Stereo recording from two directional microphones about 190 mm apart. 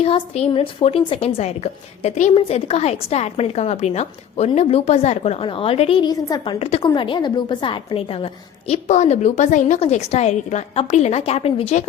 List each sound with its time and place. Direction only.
0.0 s a woman's voice: 30° left (ahead or behind)